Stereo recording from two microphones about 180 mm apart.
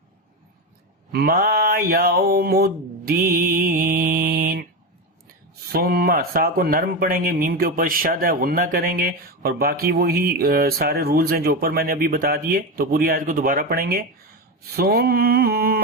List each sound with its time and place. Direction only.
1.1 s speech: 55° right (ahead or behind)
5.7 s speech: 55° right (ahead or behind)